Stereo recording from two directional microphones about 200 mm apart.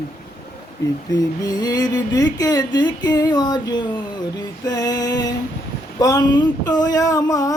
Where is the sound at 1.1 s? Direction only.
20° left (ahead or behind).